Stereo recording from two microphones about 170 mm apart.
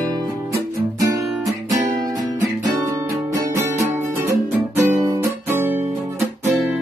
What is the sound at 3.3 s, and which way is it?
Music, 15° right (ahead or behind).